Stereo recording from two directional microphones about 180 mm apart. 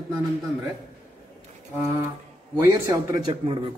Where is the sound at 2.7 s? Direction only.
15° right (ahead or behind).